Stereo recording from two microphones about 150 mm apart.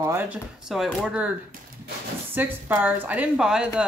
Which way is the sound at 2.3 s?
10° right (ahead or behind).